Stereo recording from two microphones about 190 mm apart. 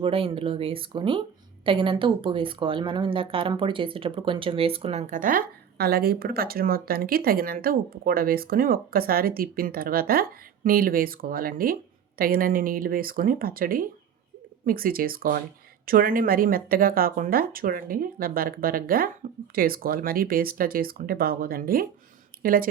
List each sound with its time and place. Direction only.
0.0 s speech: 30° right (ahead or behind); by 22.7 s 50° right (ahead or behind)